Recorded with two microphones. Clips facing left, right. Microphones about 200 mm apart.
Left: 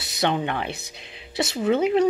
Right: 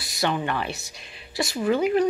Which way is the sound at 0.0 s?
20° left (ahead or behind).